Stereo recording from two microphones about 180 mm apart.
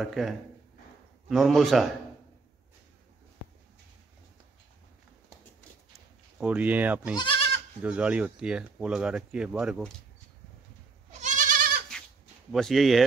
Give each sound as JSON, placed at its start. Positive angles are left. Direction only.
{"t": 0.0, "sound": "speech", "side_deg": 0}
{"t": 1.3, "sound": "speech", "side_deg": 0}
{"t": 6.4, "sound": "speech", "side_deg": -5}
{"t": 7.2, "sound": "goat", "side_deg": 30}
{"t": 7.8, "sound": "speech", "side_deg": -5}
{"t": 11.1, "sound": "goat", "side_deg": -40}
{"t": 12.4, "sound": "speech", "side_deg": 0}